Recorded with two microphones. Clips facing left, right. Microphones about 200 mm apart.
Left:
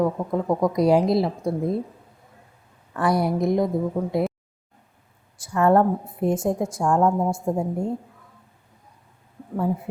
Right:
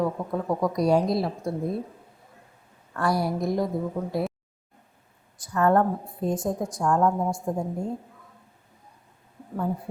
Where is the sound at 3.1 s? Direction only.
20° left (ahead or behind).